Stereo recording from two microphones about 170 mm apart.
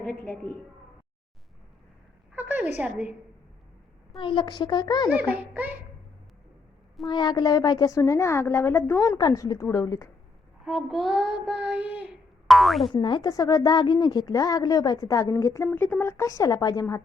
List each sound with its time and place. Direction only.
0.0 s child singing: centre (ahead or behind)
2.3 s a sound: 10° right (ahead or behind)
2.7 s a woman's voice: 10° right (ahead or behind)
4.2 s a woman's voice: 30° left (ahead or behind)
5.3 s a woman's voice: 10° right (ahead or behind)
7.0 s a woman's voice: 25° left (ahead or behind)
10.7 s child singing: centre (ahead or behind)
12.9 s a woman's voice: 25° left (ahead or behind)